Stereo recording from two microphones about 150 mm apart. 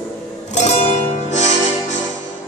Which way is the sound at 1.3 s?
50° left (ahead or behind).